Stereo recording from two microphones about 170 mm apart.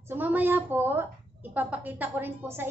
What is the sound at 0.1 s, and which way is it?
A woman's voice, 10° right (ahead or behind).